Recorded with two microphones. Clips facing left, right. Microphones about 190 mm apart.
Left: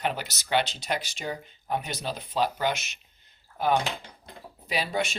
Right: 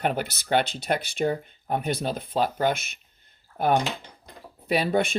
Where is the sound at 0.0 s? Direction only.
55° right (ahead or behind).